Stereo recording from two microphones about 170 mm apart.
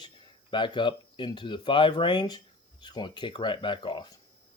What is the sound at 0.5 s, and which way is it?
Speech, 30° left (ahead or behind).